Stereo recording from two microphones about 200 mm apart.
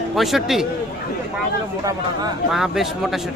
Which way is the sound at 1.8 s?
20° right (ahead or behind).